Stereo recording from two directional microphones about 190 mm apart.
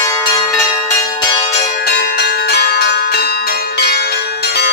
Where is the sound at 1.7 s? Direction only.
60° left (ahead or behind).